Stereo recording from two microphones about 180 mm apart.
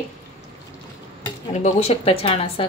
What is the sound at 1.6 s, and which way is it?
Speech, 35° left (ahead or behind).